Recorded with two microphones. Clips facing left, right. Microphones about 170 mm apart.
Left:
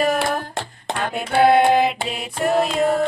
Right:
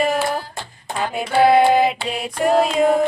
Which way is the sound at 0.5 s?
70° left (ahead or behind).